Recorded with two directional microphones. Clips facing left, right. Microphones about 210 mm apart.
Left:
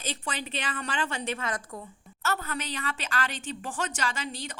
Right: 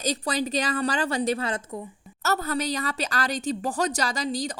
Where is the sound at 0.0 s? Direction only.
40° right (ahead or behind).